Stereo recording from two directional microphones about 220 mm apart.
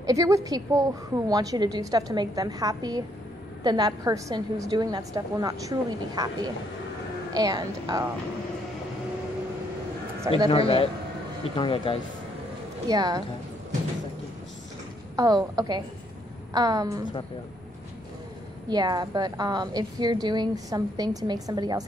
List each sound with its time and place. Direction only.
0.0 s a woman's voice: 15° right (ahead or behind)
7.3 s a woman's voice: 20° right (ahead or behind)
10.5 s speech: 25° left (ahead or behind)
12.8 s a woman's voice: 15° right (ahead or behind)
15.1 s a woman's voice: 15° right (ahead or behind)
18.7 s a woman's voice: 20° right (ahead or behind)